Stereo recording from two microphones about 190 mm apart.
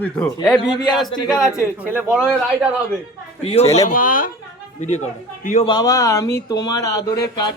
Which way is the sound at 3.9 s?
45° left (ahead or behind).